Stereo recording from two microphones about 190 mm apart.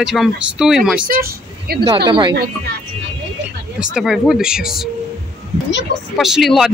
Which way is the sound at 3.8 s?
Centre (ahead or behind).